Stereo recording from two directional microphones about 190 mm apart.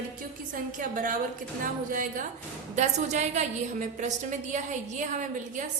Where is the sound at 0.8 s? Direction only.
45° right (ahead or behind).